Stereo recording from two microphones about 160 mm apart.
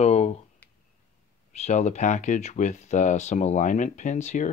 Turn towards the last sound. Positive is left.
turn(degrees=50)  # may be behind; listen again after turning